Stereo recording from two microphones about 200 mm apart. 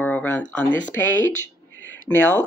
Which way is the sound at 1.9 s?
10° left (ahead or behind).